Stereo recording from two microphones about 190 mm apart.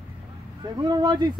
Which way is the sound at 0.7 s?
20° right (ahead or behind).